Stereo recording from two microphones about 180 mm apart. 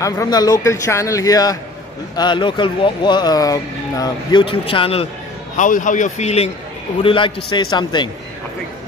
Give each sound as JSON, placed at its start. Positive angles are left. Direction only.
{"t": 0.0, "sound": "speech", "side_deg": 20}
{"t": 5.6, "sound": "a man's voice", "side_deg": 45}